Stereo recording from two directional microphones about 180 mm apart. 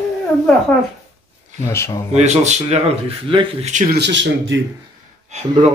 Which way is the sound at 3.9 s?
75° right (ahead or behind).